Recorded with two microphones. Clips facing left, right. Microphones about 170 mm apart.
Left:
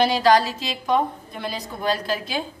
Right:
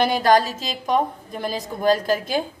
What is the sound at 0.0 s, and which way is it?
A woman's voice, 50° right (ahead or behind).